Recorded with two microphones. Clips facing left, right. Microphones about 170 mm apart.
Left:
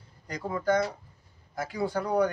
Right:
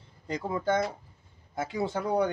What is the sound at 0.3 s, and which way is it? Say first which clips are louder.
Speech: left 1 dB; 25° right (ahead or behind).